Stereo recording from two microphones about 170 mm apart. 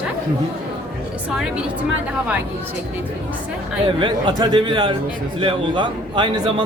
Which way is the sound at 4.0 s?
30° right (ahead or behind).